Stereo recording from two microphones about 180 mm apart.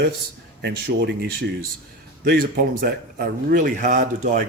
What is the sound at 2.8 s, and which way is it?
A man's voice, 50° right (ahead or behind).